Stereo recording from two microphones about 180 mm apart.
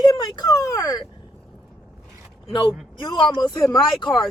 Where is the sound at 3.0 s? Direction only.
25° left (ahead or behind).